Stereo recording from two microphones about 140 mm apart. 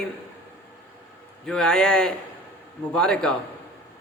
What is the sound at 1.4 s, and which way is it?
Speech, 5° left (ahead or behind).